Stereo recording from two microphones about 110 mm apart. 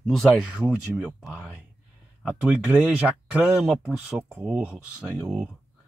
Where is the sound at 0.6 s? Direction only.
15° right (ahead or behind).